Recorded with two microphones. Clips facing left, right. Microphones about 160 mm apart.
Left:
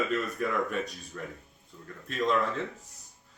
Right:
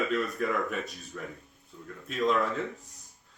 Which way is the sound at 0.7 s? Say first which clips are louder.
Left 2 dB; centre (ahead or behind).